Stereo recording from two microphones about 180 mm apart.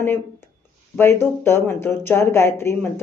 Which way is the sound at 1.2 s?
15° left (ahead or behind).